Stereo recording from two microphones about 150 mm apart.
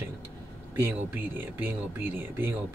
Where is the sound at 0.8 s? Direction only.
15° right (ahead or behind).